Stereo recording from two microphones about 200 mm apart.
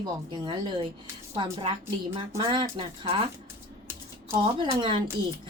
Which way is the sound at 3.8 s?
15° right (ahead or behind).